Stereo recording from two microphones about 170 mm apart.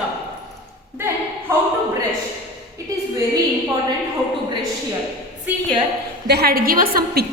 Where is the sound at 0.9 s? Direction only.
15° right (ahead or behind).